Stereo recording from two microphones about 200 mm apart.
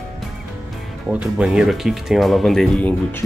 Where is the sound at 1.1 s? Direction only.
5° right (ahead or behind).